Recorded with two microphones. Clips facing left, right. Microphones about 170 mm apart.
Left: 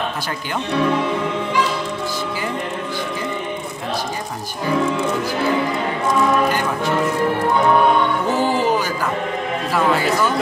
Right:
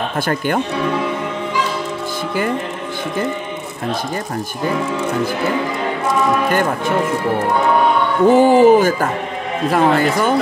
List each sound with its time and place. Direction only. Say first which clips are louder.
8.3 s speech: right 13 dB; 50° right (ahead or behind)